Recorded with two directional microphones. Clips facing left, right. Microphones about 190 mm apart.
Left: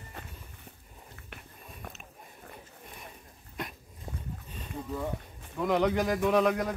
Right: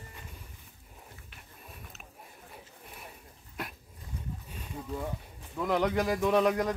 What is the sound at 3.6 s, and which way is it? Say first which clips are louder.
Dog: left 1 dB; 5° right (ahead or behind).